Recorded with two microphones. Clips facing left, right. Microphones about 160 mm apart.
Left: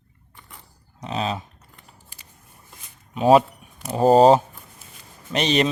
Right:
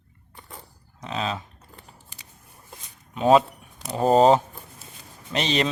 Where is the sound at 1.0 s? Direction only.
20° left (ahead or behind).